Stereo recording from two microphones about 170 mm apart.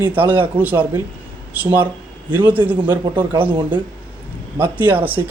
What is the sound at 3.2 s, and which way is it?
Speech, 25° right (ahead or behind).